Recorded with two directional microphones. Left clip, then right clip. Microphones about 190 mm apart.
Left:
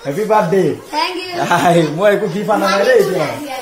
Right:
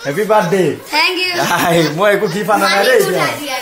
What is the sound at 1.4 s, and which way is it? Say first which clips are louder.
Speech: left 3 dB; 20° right (ahead or behind).